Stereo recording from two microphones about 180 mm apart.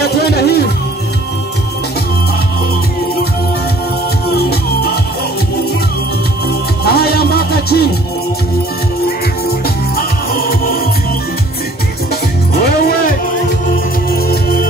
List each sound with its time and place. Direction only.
0.0 s a sound: 60° left (ahead or behind)
4.3 s music: 60° left (ahead or behind)
6.8 s music: 60° left (ahead or behind)
9.0 s music: 55° left (ahead or behind)
12.5 s music: 55° left (ahead or behind)
14.1 s music: 60° left (ahead or behind)